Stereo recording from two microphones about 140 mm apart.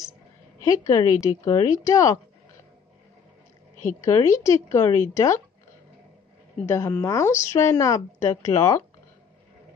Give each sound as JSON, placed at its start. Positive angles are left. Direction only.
{"t": 0.7, "sound": "speech", "side_deg": 25}
{"t": 4.0, "sound": "speech", "side_deg": 25}
{"t": 6.6, "sound": "speech", "side_deg": 15}